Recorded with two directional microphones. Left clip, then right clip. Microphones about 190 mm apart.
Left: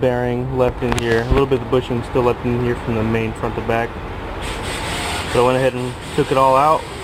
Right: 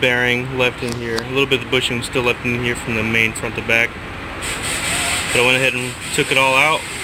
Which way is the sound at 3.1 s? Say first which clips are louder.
Right 4 dB; 70° left (ahead or behind).